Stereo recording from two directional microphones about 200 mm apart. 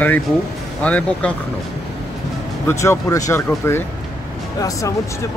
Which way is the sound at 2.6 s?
15° left (ahead or behind).